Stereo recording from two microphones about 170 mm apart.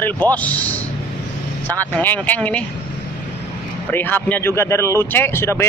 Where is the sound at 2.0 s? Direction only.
10° left (ahead or behind).